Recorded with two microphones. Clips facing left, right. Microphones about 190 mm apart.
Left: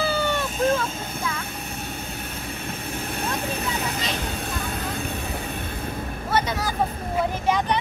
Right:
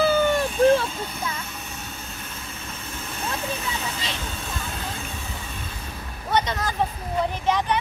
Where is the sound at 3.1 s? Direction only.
60° left (ahead or behind).